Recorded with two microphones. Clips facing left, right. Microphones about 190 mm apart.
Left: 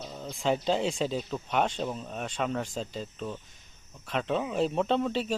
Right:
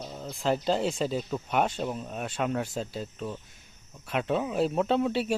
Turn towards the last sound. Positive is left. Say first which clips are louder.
# right 2 dB
turn(degrees=-10)  # may be behind; listen again after turning